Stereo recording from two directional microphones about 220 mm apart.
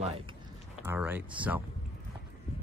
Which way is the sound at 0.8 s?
10° right (ahead or behind).